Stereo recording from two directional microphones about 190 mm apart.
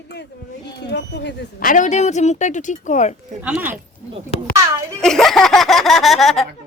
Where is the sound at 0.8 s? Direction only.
65° left (ahead or behind).